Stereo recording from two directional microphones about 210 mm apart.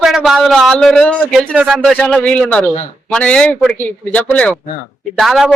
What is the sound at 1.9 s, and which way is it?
Speech, 5° left (ahead or behind).